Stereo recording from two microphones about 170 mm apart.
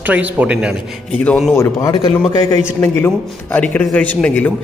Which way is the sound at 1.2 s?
5° left (ahead or behind).